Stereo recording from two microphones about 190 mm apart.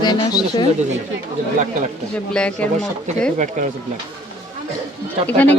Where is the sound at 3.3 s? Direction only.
40° right (ahead or behind).